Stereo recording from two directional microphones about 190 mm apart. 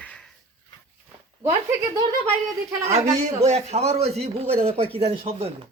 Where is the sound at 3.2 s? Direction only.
35° right (ahead or behind).